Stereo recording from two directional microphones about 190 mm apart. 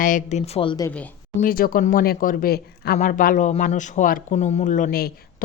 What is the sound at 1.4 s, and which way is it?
Speech, 50° left (ahead or behind).